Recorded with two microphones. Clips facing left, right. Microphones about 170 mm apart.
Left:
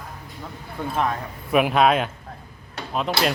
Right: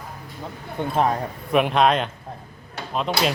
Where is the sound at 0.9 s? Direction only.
30° right (ahead or behind).